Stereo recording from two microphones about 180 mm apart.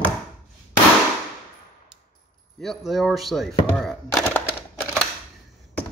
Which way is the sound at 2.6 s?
Centre (ahead or behind).